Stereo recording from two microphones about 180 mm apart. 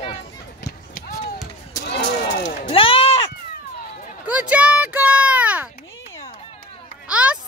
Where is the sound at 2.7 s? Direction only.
30° left (ahead or behind).